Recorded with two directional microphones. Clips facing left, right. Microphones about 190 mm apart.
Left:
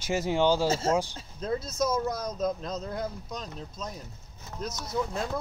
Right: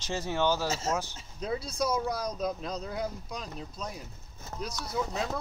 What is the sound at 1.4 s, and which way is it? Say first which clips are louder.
Speech: left 2 dB; 10° right (ahead or behind).